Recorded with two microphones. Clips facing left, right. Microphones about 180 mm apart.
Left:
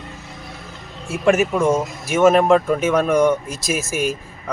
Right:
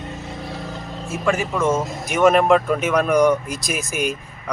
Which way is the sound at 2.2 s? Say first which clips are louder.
Left 1 dB; centre (ahead or behind).